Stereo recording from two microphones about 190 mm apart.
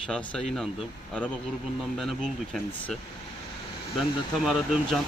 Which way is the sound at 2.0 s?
Centre (ahead or behind).